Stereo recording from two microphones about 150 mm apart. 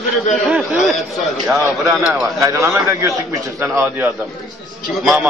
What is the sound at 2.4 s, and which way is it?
Speech, 15° right (ahead or behind).